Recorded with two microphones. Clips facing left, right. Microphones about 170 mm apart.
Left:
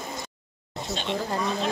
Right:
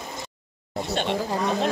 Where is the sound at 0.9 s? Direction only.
55° right (ahead or behind).